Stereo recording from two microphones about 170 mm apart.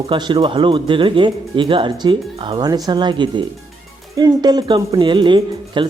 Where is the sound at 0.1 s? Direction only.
30° right (ahead or behind).